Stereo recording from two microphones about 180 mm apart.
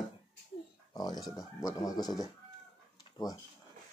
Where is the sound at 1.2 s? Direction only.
Centre (ahead or behind).